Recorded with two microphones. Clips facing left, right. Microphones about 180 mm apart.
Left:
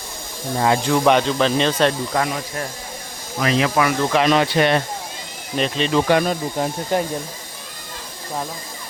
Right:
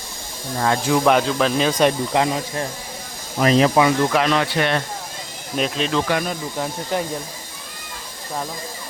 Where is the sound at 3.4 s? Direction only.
35° right (ahead or behind).